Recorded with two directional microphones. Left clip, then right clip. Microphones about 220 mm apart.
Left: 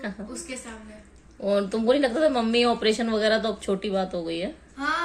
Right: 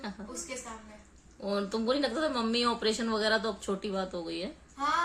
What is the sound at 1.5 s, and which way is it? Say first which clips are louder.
Speech: left 8 dB; 5° left (ahead or behind).